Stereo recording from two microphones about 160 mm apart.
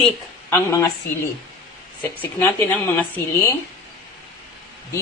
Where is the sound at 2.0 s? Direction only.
10° left (ahead or behind).